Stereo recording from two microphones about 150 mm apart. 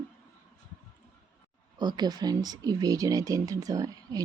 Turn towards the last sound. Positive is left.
turn(degrees=-25)  # may be behind; listen again after turning